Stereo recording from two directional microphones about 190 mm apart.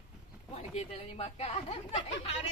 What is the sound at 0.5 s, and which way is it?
A man's voice, 30° left (ahead or behind).